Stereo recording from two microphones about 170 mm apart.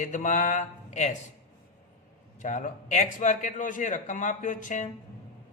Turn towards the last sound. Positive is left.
turn(degrees=50)  # may be behind; listen again after turning